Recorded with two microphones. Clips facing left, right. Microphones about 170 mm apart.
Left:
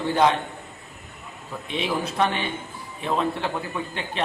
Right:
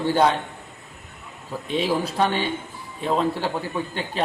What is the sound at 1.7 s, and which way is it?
A man's voice, 35° right (ahead or behind).